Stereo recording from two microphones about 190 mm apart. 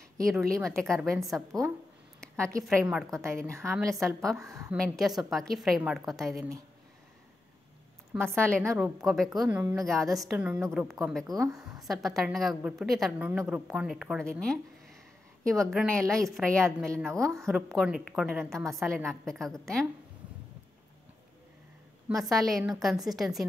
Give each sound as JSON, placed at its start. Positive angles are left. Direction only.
{"t": 0.3, "sound": "a woman's voice", "side_deg": 0}
{"t": 1.5, "sound": "a woman's voice", "side_deg": -20}
{"t": 2.1, "sound": "a sound", "side_deg": 5}
{"t": 2.6, "sound": "a woman's voice", "side_deg": -5}
{"t": 3.4, "sound": "a woman's voice", "side_deg": -15}
{"t": 4.0, "sound": "a woman's voice", "side_deg": 0}
{"t": 4.4, "sound": "a woman's voice", "side_deg": -15}
{"t": 4.6, "sound": "a woman's voice", "side_deg": 0}
{"t": 8.1, "sound": "a woman's voice", "side_deg": 5}
{"t": 11.2, "sound": "a woman's voice", "side_deg": -20}
{"t": 11.8, "sound": "a woman's voice", "side_deg": 0}
{"t": 17.1, "sound": "a woman's voice", "side_deg": -15}
{"t": 17.5, "sound": "a woman's voice", "side_deg": 0}
{"t": 22.1, "sound": "a woman's voice", "side_deg": 0}